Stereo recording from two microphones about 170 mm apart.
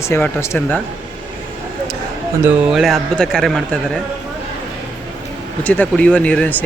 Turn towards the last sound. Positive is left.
turn(degrees=10)  # may be behind; listen again after turning